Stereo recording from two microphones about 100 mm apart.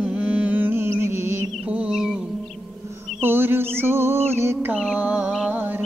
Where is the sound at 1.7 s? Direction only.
10° right (ahead or behind).